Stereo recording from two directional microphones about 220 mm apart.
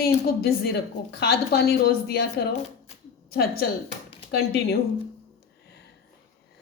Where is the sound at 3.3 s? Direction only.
45° left (ahead or behind).